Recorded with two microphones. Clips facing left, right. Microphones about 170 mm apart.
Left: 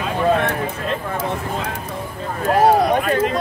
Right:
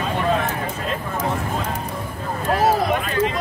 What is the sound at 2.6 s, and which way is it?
Speech, 50° left (ahead or behind).